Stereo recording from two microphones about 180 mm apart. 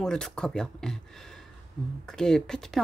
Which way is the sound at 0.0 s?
5° left (ahead or behind).